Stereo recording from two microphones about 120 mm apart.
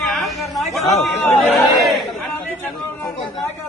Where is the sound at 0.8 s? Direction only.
65° left (ahead or behind).